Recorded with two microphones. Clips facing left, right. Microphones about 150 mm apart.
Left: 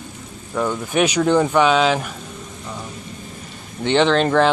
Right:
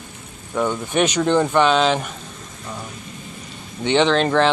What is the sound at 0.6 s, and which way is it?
Speech, 5° left (ahead or behind).